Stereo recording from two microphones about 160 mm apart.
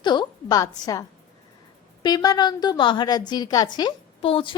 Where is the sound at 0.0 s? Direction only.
30° left (ahead or behind).